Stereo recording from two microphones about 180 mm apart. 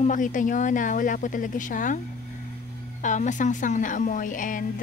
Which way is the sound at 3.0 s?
45° left (ahead or behind).